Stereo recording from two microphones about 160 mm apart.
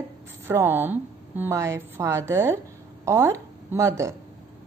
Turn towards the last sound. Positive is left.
turn(degrees=-20)  # may be behind; listen again after turning